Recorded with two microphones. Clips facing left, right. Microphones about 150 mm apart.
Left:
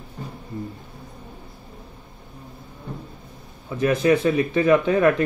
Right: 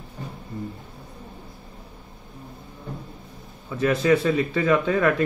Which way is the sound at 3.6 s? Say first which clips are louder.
Left 2 dB; 15° left (ahead or behind).